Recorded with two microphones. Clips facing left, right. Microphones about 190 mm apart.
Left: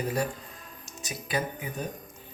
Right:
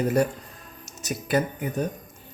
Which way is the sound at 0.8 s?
55° right (ahead or behind).